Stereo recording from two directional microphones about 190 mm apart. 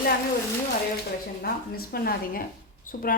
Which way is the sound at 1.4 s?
50° left (ahead or behind).